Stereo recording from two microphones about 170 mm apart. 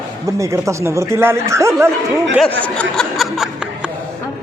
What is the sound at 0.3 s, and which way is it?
Speech, 15° right (ahead or behind).